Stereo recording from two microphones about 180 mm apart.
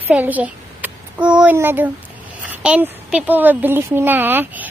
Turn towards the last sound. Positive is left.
turn(degrees=-10)  # may be behind; listen again after turning